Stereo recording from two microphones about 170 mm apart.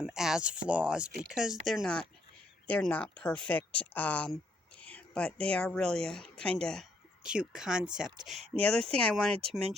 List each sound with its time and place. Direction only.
0.0 s speech: 5° right (ahead or behind)